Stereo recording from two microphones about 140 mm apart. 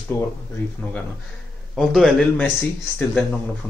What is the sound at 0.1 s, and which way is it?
Speech, 15° left (ahead or behind).